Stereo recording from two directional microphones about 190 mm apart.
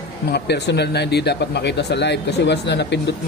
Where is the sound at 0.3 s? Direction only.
60° left (ahead or behind).